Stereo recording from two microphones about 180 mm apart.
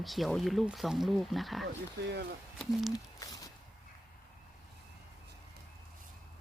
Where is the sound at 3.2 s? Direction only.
20° left (ahead or behind).